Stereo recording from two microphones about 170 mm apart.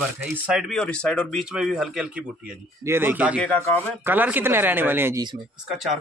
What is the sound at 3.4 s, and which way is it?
Speech, 10° left (ahead or behind).